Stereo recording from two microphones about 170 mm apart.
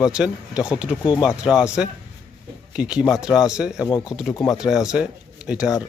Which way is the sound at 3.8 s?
25° left (ahead or behind).